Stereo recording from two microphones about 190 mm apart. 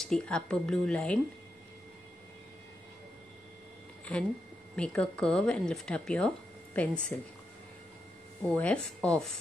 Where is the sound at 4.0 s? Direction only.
5° left (ahead or behind).